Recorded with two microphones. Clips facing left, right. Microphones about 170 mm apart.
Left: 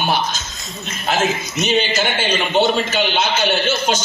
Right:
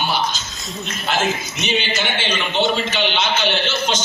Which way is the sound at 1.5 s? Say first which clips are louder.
Left 4 dB; 40° left (ahead or behind).